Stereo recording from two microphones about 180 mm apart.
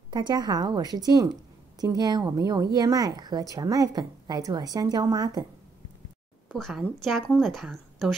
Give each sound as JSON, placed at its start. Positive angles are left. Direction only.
{"t": 0.1, "sound": "a woman's voice", "side_deg": -25}
{"t": 6.5, "sound": "a woman's voice", "side_deg": 0}